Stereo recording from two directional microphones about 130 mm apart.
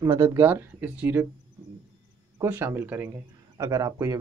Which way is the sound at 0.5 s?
10° right (ahead or behind).